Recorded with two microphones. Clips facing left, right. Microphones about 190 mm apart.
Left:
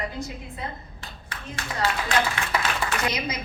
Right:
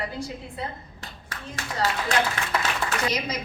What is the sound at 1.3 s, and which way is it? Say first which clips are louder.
Speech: even; 45° right (ahead or behind).